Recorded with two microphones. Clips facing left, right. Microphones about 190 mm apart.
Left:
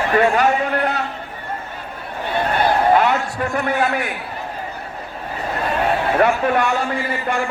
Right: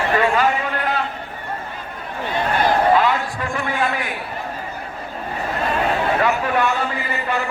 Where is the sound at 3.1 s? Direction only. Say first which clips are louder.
Left 3 dB; 45° left (ahead or behind).